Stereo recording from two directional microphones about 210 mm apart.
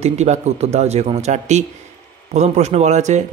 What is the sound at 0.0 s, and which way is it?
Speech, 30° right (ahead or behind).